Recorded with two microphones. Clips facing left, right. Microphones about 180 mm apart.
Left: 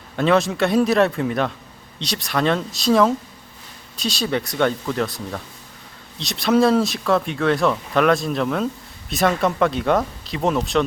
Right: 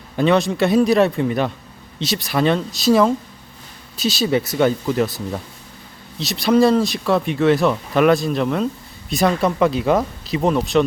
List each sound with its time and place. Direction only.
0.2 s speech: centre (ahead or behind)